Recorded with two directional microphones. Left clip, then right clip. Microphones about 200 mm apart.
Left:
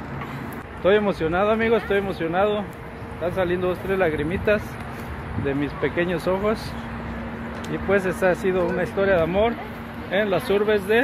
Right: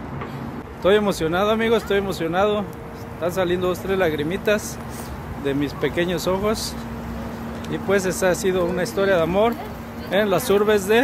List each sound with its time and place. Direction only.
0.8 s speech: centre (ahead or behind)
7.7 s speech: 5° left (ahead or behind)
10.1 s speech: 20° right (ahead or behind)